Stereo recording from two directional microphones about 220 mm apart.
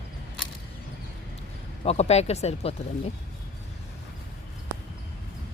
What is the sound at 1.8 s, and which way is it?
Speech, 30° left (ahead or behind).